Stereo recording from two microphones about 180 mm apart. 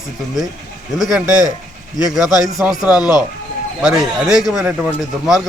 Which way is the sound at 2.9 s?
20° left (ahead or behind).